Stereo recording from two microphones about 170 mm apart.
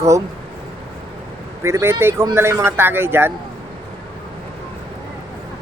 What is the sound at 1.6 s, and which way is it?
Speech, 15° right (ahead or behind).